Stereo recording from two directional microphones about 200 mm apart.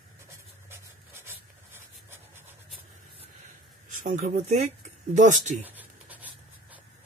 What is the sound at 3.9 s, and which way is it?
Speech, 40° right (ahead or behind).